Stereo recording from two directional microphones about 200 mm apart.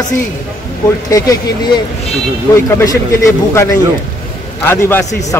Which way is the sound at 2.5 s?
15° left (ahead or behind).